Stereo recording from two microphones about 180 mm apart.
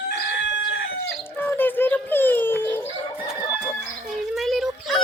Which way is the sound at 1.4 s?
10° left (ahead or behind).